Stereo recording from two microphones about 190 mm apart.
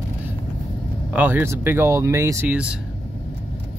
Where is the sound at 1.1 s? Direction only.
10° right (ahead or behind).